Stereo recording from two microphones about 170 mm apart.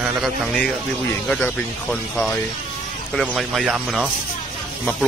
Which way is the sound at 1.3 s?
5° left (ahead or behind).